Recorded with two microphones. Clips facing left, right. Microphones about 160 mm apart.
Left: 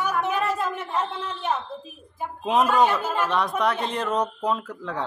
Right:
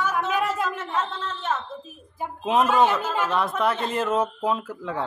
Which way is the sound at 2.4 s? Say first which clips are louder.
Even; centre (ahead or behind).